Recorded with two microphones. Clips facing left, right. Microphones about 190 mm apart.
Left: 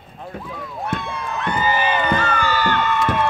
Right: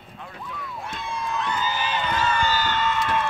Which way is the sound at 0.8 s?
65° left (ahead or behind).